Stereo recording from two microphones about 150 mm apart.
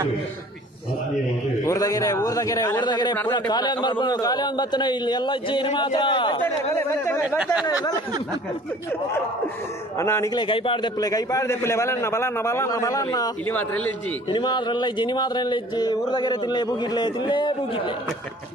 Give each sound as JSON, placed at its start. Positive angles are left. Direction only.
{"t": 1.6, "sound": "speech", "side_deg": 25}
{"t": 6.4, "sound": "speech", "side_deg": 15}
{"t": 9.9, "sound": "speech", "side_deg": 20}
{"t": 10.3, "sound": "speech", "side_deg": 35}
{"t": 13.5, "sound": "speech", "side_deg": 10}
{"t": 14.3, "sound": "speech", "side_deg": 30}